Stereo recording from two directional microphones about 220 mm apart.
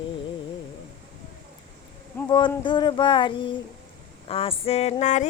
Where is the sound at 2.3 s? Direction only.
20° left (ahead or behind).